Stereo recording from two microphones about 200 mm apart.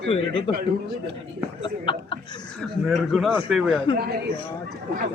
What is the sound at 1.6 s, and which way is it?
Speech, 25° left (ahead or behind).